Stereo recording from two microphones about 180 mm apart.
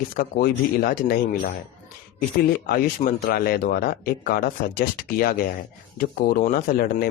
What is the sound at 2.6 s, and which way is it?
Speech, 50° left (ahead or behind).